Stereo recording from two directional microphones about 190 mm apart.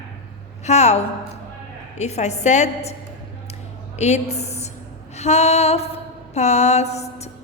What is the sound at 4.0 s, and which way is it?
A woman's voice, 35° left (ahead or behind).